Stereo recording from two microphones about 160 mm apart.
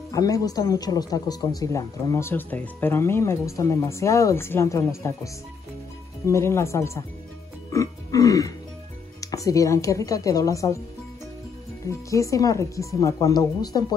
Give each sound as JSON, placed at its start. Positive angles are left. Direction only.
{"t": 0.1, "sound": "speech", "side_deg": 20}
{"t": 7.7, "sound": "music", "side_deg": 20}
{"t": 9.2, "sound": "speech", "side_deg": 20}
{"t": 12.1, "sound": "speech", "side_deg": 20}